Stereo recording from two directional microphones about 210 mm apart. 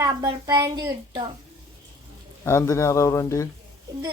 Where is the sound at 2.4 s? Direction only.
10° left (ahead or behind).